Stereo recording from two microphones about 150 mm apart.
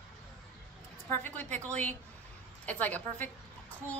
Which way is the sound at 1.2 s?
10° left (ahead or behind).